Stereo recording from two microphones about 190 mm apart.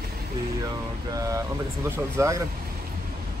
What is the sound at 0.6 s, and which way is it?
Speech, 20° right (ahead or behind).